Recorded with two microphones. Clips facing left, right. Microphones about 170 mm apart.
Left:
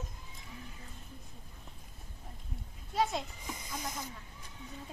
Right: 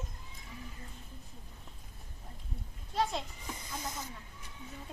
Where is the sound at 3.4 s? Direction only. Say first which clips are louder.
Even; 15° left (ahead or behind).